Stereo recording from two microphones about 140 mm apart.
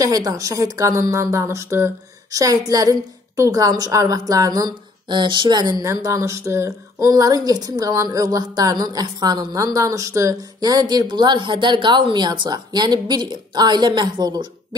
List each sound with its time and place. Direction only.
0.0 s a woman's voice: 25° right (ahead or behind)